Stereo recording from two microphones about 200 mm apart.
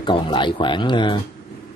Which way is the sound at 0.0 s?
25° left (ahead or behind).